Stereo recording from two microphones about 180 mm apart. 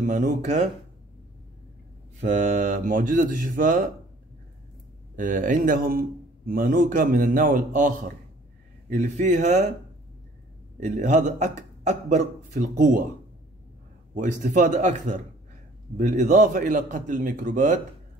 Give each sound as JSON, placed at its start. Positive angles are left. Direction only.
{"t": 0.0, "sound": "a man's voice", "side_deg": -45}
{"t": 2.1, "sound": "a man's voice", "side_deg": -45}
{"t": 5.1, "sound": "a man's voice", "side_deg": -50}
{"t": 10.8, "sound": "speech", "side_deg": -45}
{"t": 14.1, "sound": "a man's voice", "side_deg": -45}